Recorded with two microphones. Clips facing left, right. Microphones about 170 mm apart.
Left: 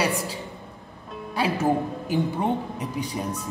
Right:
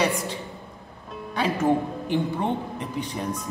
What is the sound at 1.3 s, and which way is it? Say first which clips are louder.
Speech: right 1 dB; 5° left (ahead or behind).